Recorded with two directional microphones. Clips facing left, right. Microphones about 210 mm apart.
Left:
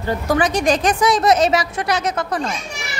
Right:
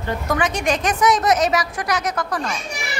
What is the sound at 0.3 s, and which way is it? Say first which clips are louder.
A woman's voice: left 4 dB; 35° left (ahead or behind).